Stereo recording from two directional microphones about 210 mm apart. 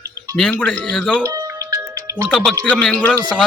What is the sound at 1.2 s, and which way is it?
Music, 15° right (ahead or behind).